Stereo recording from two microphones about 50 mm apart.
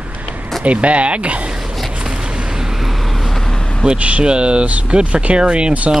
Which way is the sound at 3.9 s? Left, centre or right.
Right.